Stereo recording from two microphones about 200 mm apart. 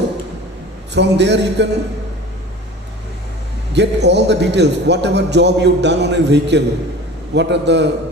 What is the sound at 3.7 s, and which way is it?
A man's voice, 60° right (ahead or behind).